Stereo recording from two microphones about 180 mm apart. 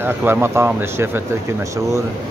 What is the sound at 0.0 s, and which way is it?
Speech, 10° right (ahead or behind).